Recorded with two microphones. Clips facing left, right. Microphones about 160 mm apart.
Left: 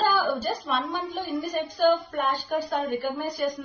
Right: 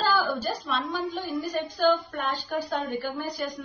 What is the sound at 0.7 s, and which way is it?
Speech, 55° left (ahead or behind).